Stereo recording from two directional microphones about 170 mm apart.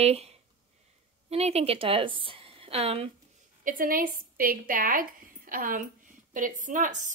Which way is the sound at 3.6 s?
55° right (ahead or behind).